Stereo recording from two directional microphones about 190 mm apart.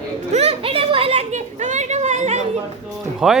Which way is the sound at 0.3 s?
35° right (ahead or behind).